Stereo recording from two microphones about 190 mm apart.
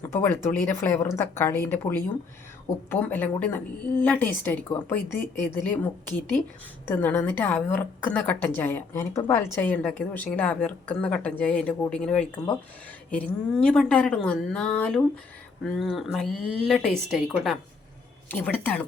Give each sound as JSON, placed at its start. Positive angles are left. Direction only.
{"t": 0.0, "sound": "a woman's voice", "side_deg": 10}